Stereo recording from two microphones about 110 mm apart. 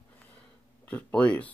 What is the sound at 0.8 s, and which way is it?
Speech, 15° left (ahead or behind).